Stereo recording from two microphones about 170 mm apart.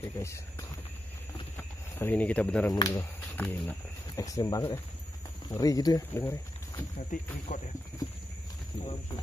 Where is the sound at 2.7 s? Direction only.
20° left (ahead or behind).